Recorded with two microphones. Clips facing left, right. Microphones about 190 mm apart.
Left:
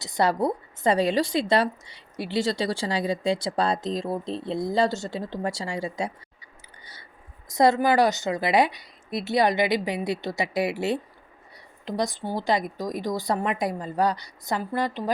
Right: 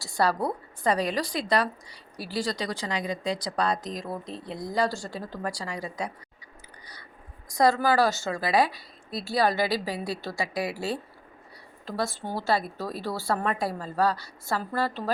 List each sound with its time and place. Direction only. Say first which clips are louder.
0.0 s a woman's voice: left 3 dB; 20° left (ahead or behind)
7.5 s a woman's voice: left 2 dB; 20° left (ahead or behind)